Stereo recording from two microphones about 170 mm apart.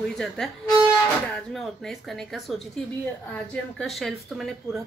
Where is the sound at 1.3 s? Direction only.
Centre (ahead or behind).